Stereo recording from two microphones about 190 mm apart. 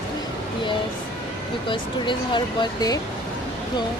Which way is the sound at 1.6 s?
25° left (ahead or behind).